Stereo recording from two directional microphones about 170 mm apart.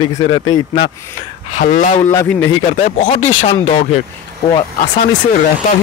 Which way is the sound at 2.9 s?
50° left (ahead or behind).